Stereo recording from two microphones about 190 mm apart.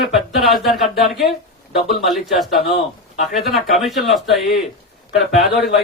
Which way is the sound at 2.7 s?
35° left (ahead or behind).